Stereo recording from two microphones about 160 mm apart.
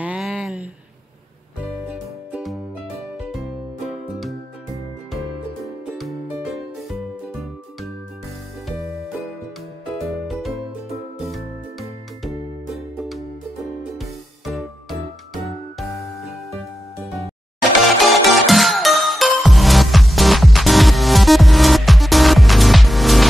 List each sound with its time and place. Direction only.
0.0 s a sound: 5° right (ahead or behind)
1.9 s music: 5° right (ahead or behind)
5.9 s music: centre (ahead or behind)
9.9 s music: centre (ahead or behind)
17.8 s music: centre (ahead or behind)